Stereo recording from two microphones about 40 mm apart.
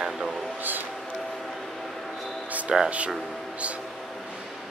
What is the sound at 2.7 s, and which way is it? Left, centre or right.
Speech, centre.